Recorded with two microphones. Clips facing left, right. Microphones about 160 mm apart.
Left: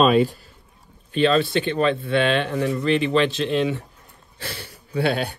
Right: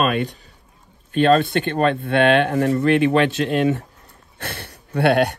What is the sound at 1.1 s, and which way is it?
Speech, 55° right (ahead or behind).